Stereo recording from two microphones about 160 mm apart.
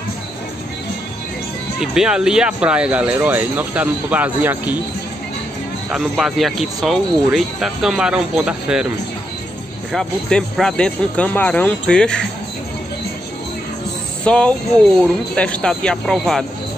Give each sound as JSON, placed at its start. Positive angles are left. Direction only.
{"t": 1.8, "sound": "speech", "side_deg": -5}
{"t": 5.9, "sound": "speech", "side_deg": 0}
{"t": 9.9, "sound": "speech", "side_deg": 5}
{"t": 14.2, "sound": "speech", "side_deg": 5}